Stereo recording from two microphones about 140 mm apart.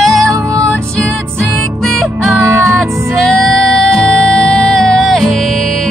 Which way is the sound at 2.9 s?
20° right (ahead or behind).